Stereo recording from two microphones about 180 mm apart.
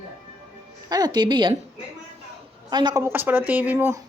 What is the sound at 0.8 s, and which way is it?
Speech, 20° right (ahead or behind).